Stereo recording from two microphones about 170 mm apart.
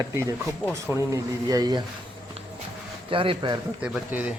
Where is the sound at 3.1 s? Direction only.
30° right (ahead or behind).